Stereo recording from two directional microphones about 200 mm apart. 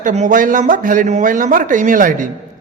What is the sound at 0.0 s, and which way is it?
Speech, 40° right (ahead or behind).